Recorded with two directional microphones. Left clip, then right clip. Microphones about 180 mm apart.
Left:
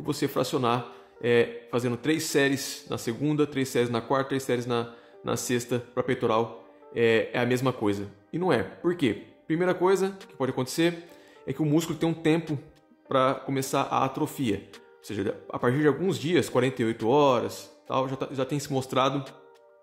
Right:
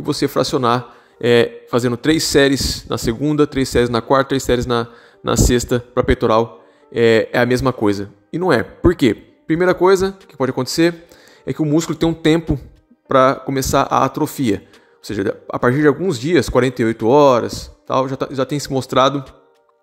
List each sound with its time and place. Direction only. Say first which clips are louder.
0.0 s speech: right 10 dB; 35° right (ahead or behind)